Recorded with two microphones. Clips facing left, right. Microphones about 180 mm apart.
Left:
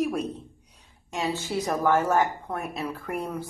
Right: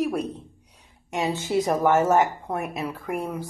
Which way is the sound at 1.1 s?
20° right (ahead or behind).